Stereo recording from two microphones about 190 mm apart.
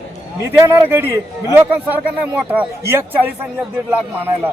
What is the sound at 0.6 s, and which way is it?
Speech, 10° right (ahead or behind).